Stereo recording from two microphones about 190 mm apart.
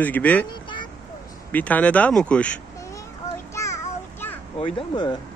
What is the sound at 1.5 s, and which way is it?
Speech, 10° left (ahead or behind).